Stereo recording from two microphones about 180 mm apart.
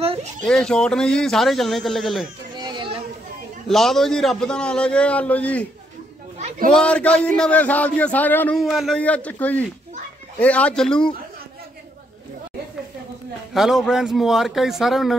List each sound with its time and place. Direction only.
0.0 s a sound: 30° right (ahead or behind)
0.5 s a man's voice: 5° left (ahead or behind)
2.5 s children playing: 25° right (ahead or behind)
3.6 s a man's voice: centre (ahead or behind)
6.7 s a man's voice: 5° left (ahead or behind)
13.5 s a man's voice: centre (ahead or behind)